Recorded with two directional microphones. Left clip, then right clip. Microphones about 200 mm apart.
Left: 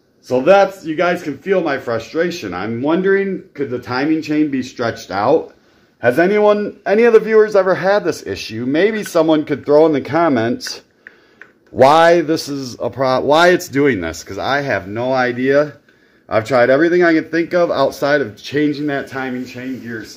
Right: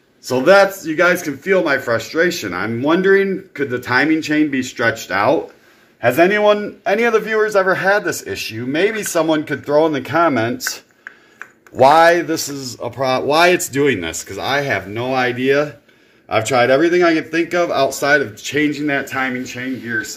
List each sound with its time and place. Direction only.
0.4 s a man's voice: centre (ahead or behind)
0.8 s a man's voice: 15° left (ahead or behind); by 7.7 s 50° left (ahead or behind)
7.7 s speech: 25° left (ahead or behind)
10.3 s a man's voice: 50° left (ahead or behind)
13.7 s speech: 20° left (ahead or behind)
19.0 s speech: 40° left (ahead or behind)